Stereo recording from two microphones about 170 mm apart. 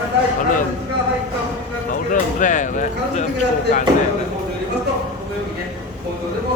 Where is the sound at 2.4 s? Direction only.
45° left (ahead or behind).